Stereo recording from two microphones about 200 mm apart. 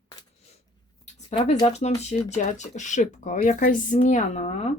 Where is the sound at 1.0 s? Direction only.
35° left (ahead or behind).